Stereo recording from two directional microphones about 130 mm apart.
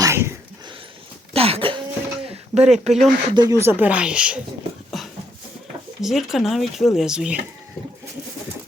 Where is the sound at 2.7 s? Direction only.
60° right (ahead or behind).